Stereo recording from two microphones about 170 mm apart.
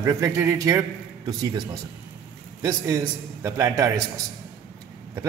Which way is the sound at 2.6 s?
20° right (ahead or behind).